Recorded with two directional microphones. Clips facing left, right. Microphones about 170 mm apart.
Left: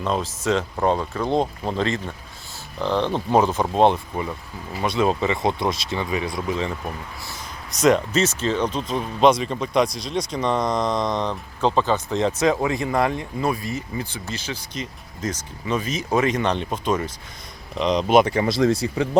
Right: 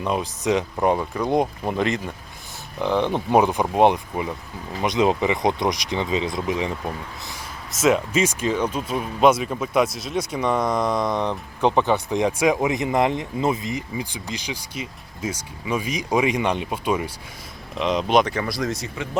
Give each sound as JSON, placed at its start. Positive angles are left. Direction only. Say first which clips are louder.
{"t": 0.0, "sound": "speech", "louder": "even", "side_deg": -15}
{"t": 7.7, "sound": "speech", "louder": "left 1 dB", "side_deg": -5}
{"t": 18.3, "sound": "speech", "louder": "left 6 dB", "side_deg": 25}